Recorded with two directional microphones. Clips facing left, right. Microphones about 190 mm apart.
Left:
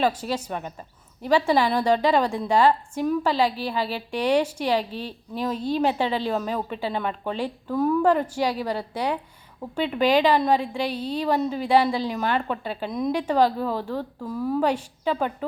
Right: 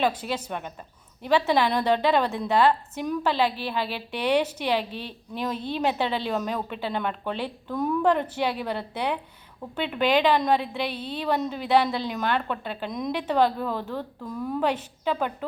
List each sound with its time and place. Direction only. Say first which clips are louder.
0.0 s speech: left 2 dB; 10° left (ahead or behind)
4.8 s a woman's voice: left 2 dB; 35° left (ahead or behind)
5.9 s a woman's voice: left 2 dB; 10° left (ahead or behind)
10.8 s a woman's voice: left 4 dB; 40° left (ahead or behind)
11.2 s speech: left 2 dB; 5° left (ahead or behind)